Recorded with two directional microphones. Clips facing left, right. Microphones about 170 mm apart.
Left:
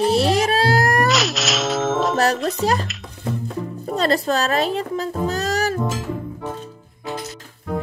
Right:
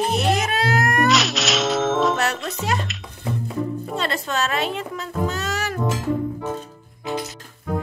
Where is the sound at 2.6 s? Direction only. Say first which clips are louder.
Left 5 dB; 35° left (ahead or behind).